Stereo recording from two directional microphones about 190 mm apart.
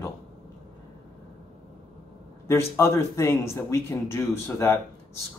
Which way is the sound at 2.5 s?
15° left (ahead or behind).